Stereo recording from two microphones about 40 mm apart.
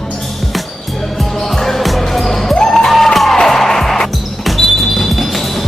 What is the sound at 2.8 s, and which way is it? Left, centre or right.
Music, centre.